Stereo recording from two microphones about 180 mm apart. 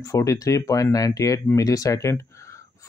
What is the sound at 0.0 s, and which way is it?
Speech, 15° left (ahead or behind).